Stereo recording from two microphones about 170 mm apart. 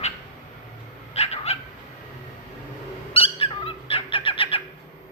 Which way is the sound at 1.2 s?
40° left (ahead or behind).